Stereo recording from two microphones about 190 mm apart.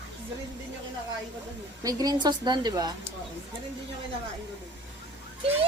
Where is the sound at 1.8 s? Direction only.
20° right (ahead or behind).